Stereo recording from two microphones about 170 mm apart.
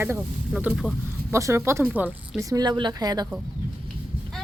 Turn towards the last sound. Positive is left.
turn(degrees=-25)  # may be behind; listen again after turning